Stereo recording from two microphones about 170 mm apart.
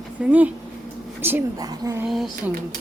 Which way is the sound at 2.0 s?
Centre (ahead or behind).